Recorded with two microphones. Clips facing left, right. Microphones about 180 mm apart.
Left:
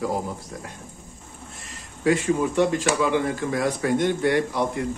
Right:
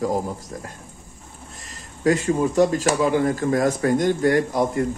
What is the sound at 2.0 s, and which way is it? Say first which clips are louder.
Speech: right 2 dB; 40° right (ahead or behind).